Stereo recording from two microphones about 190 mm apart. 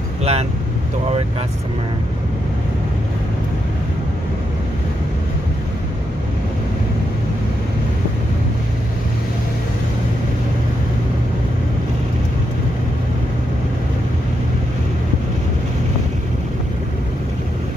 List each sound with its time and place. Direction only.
0.2 s speech: 35° right (ahead or behind)